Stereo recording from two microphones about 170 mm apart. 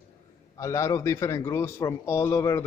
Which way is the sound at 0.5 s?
20° left (ahead or behind).